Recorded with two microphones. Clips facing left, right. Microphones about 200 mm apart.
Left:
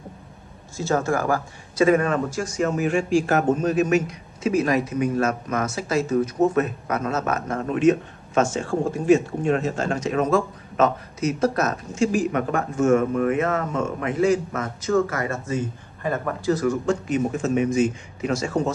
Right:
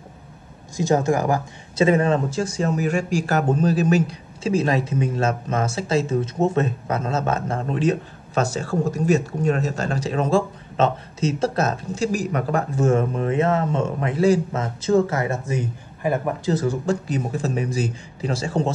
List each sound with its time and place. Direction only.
0.7 s a man's voice: 15° right (ahead or behind)